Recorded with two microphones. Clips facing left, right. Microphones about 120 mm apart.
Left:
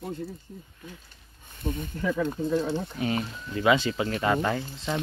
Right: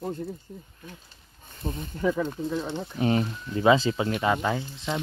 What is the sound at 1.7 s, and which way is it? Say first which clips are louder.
Speech: right 2 dB; 25° right (ahead or behind).